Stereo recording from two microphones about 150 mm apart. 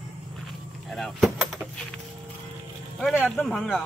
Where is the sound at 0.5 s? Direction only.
Centre (ahead or behind).